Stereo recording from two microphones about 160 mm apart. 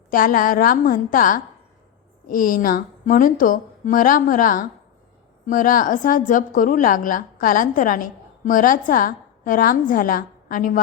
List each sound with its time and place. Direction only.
0.1 s a woman's voice: 60° left (ahead or behind)